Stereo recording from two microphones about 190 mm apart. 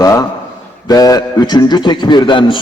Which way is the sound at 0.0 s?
20° left (ahead or behind).